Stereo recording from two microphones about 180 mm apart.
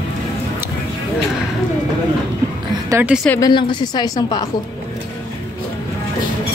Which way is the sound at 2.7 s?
20° right (ahead or behind).